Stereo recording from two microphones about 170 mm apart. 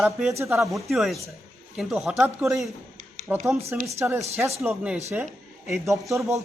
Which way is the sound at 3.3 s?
10° right (ahead or behind).